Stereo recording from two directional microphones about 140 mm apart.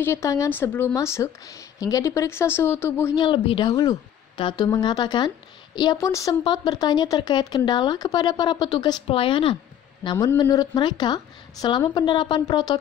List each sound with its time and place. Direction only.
0.0 s speech: 20° left (ahead or behind)
3.2 s speech: 35° left (ahead or behind)
10.1 s speech: 25° left (ahead or behind)